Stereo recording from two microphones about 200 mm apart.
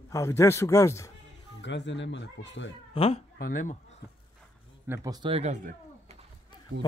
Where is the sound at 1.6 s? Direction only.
65° left (ahead or behind).